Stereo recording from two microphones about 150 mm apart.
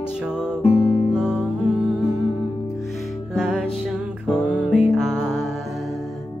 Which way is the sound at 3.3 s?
5° right (ahead or behind).